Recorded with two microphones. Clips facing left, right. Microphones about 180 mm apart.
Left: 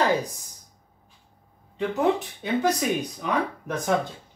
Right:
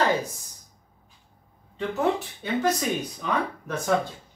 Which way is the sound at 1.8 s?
15° left (ahead or behind).